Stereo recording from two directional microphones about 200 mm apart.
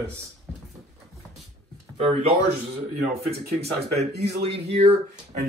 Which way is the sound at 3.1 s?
55° right (ahead or behind).